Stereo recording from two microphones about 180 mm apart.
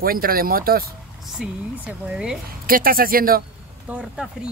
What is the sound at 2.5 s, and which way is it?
Speech, 55° right (ahead or behind).